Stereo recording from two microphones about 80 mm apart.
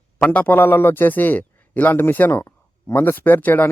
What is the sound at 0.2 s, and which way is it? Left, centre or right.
Speech, left.